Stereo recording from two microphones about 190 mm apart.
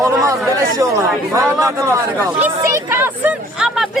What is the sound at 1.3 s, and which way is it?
Speech, 15° right (ahead or behind).